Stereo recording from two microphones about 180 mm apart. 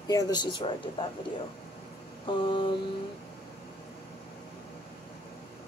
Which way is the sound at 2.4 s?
30° left (ahead or behind).